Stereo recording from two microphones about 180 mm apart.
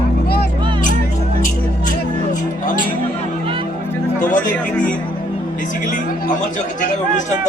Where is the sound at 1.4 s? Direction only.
45° left (ahead or behind).